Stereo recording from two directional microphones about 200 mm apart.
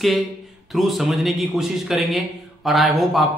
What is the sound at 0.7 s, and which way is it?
Speech, centre (ahead or behind).